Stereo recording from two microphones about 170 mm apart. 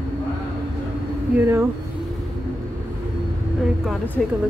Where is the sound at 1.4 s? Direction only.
15° right (ahead or behind).